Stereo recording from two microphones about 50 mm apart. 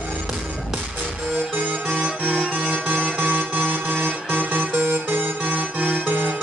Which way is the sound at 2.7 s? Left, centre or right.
Right.